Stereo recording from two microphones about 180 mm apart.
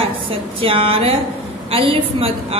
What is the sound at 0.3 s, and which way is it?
A woman's voice, 30° right (ahead or behind).